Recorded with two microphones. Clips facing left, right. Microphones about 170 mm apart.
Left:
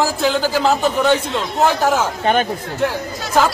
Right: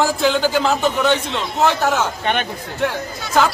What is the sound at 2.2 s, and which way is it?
Speech, 40° left (ahead or behind).